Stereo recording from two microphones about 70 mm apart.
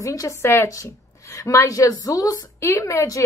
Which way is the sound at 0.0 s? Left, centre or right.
Left.